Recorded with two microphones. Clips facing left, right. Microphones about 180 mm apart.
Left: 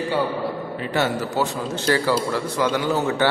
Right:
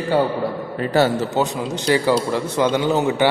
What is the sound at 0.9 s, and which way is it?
Speech, 35° right (ahead or behind).